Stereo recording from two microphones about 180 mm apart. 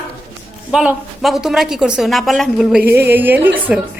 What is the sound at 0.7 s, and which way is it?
A woman's voice, 5° right (ahead or behind).